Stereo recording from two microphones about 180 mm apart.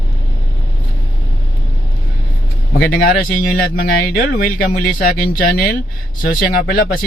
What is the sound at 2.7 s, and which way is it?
Speech, 55° left (ahead or behind).